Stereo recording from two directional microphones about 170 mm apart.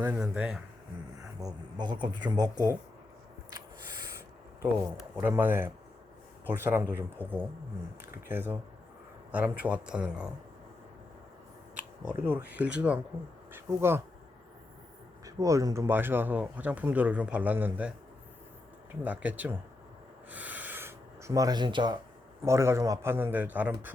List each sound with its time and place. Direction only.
0.0 s speech: 10° right (ahead or behind)
1.2 s speech: 20° right (ahead or behind)
5.2 s speech: 10° right (ahead or behind)
12.0 s speech: 10° right (ahead or behind)
15.2 s speech: 20° right (ahead or behind)
19.0 s speech: 10° right (ahead or behind)
20.3 s a sound: 10° right (ahead or behind); by 21.9 s 25° right (ahead or behind)
22.4 s speech: 15° right (ahead or behind)